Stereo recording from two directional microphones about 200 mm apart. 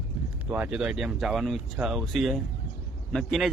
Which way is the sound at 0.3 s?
5° right (ahead or behind).